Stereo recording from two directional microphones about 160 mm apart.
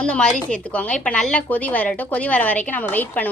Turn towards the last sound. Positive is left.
turn(degrees=10)  # may be behind; listen again after turning